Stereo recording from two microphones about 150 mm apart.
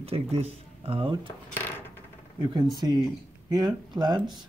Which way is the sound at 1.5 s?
15° left (ahead or behind).